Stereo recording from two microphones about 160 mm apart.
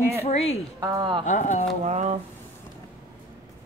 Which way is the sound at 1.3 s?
50° left (ahead or behind).